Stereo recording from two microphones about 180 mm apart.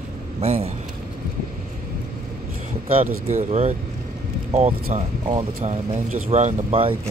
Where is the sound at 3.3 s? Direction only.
40° right (ahead or behind).